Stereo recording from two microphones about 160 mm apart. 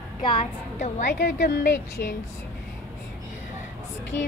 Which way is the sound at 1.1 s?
90° left.